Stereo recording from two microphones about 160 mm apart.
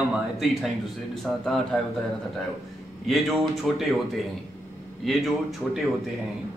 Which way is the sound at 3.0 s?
Centre (ahead or behind).